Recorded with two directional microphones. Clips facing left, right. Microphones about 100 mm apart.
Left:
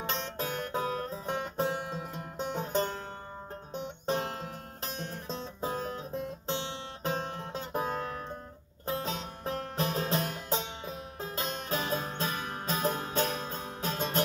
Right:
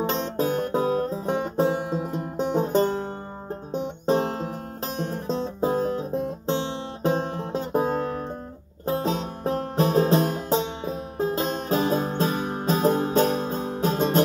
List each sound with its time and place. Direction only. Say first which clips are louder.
0.1 s music: right 10 dB; 20° right (ahead or behind)
5.2 s music: right 12 dB; 55° right (ahead or behind)
5.8 s music: right 10 dB; 35° right (ahead or behind)